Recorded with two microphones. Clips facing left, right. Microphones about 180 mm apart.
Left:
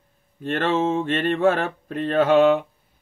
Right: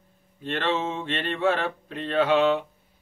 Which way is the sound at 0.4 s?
50° left (ahead or behind).